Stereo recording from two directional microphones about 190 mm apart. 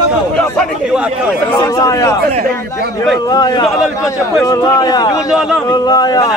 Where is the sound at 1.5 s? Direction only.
20° left (ahead or behind).